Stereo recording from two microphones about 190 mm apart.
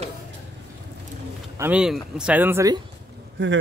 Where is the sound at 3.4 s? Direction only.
70° right (ahead or behind).